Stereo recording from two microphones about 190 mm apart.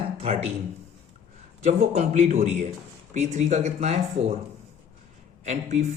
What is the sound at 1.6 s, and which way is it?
Speech, 35° right (ahead or behind).